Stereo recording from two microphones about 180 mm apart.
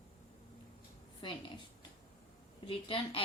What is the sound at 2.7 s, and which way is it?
Speech, 30° left (ahead or behind).